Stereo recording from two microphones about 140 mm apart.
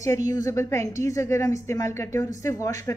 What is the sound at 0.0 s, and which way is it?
A woman's voice, 25° left (ahead or behind).